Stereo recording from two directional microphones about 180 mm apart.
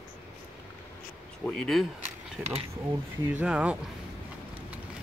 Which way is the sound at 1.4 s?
5° left (ahead or behind).